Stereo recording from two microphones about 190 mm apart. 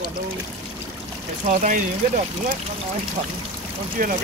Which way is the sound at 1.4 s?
40° right (ahead or behind).